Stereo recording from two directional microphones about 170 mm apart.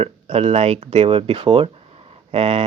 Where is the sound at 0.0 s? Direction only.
35° right (ahead or behind).